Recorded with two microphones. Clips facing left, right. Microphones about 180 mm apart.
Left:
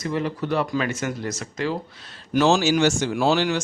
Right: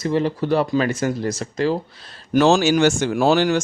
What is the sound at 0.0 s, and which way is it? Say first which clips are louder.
Speech: right 5 dB; 30° right (ahead or behind).